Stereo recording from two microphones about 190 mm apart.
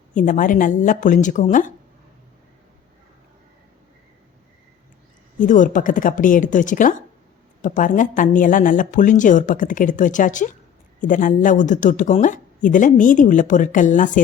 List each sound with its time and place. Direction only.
0.1 s speech: 45° left (ahead or behind)
5.5 s speech: 45° left (ahead or behind)